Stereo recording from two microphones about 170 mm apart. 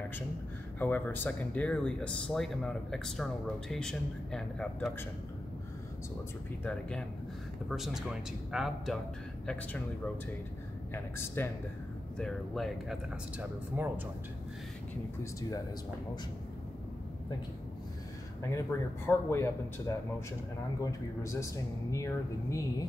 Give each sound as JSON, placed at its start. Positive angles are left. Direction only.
{"t": 0.7, "sound": "speech", "side_deg": 10}
{"t": 6.6, "sound": "speech", "side_deg": 5}
{"t": 10.9, "sound": "speech", "side_deg": 15}
{"t": 12.2, "sound": "speech", "side_deg": 0}
{"t": 13.4, "sound": "speech", "side_deg": -10}
{"t": 18.4, "sound": "speech", "side_deg": 15}